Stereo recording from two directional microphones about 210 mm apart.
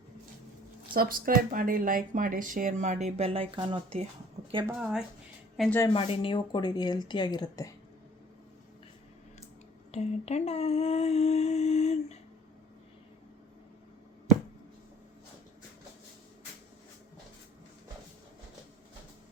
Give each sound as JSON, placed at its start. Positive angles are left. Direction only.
{"t": 0.9, "sound": "speech", "side_deg": -45}
{"t": 4.4, "sound": "a sound", "side_deg": -30}
{"t": 4.7, "sound": "speech", "side_deg": -5}
{"t": 5.9, "sound": "speech", "side_deg": 25}
{"t": 9.9, "sound": "speech", "side_deg": 30}